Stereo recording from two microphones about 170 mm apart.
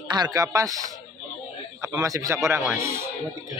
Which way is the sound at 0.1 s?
25° right (ahead or behind).